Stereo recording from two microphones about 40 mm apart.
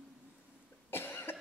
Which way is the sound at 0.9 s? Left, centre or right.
Left.